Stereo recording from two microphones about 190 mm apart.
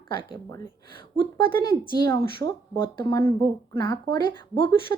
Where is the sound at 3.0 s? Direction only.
15° left (ahead or behind).